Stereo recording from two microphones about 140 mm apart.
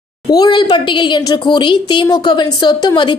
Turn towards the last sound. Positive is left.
turn(degrees=30)  # may be behind; listen again after turning